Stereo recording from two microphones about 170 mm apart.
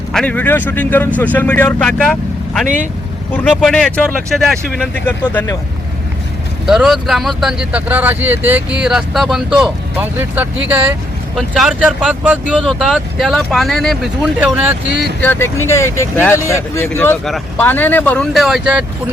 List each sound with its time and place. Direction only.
0.1 s speech: 5° left (ahead or behind)
6.7 s speech: 5° right (ahead or behind)
14.8 s speech: 85° right
15.2 s speech: 15° left (ahead or behind); by 18.9 s 5° right (ahead or behind)